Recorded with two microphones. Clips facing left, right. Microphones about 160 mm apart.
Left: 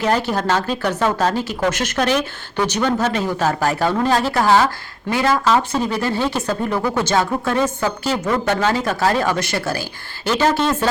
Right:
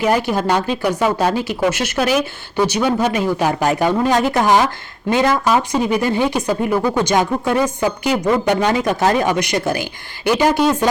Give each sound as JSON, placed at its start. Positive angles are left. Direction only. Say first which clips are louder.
{"t": 0.0, "sound": "speech", "louder": "right 2 dB", "side_deg": -10}